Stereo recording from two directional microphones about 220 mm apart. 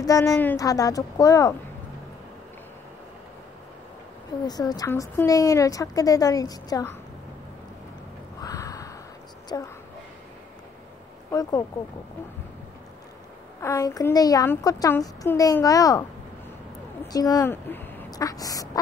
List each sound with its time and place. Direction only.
0.0 s speech: 15° left (ahead or behind)
4.5 s speech: 15° left (ahead or behind)
8.4 s a sound: 15° left (ahead or behind)
9.5 s speech: 15° left (ahead or behind)
13.6 s speech: 15° left (ahead or behind)